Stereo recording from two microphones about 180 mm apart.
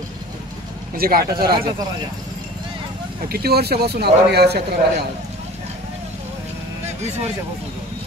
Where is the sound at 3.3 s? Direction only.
60° right (ahead or behind).